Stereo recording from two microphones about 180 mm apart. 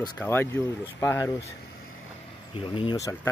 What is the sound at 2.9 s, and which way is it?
Speech, 20° left (ahead or behind).